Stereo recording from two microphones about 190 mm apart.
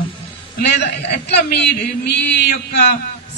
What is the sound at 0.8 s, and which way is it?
A man's voice, 65° left (ahead or behind).